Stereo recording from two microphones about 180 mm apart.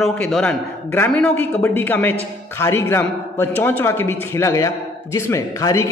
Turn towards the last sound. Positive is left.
turn(degrees=15)  # may be behind; listen again after turning